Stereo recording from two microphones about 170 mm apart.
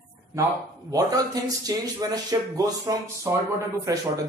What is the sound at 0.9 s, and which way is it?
Speech, 20° right (ahead or behind).